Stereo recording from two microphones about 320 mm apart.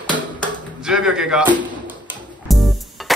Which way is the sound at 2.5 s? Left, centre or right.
Centre.